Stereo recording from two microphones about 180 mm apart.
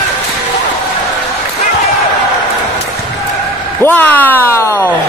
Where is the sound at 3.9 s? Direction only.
10° left (ahead or behind).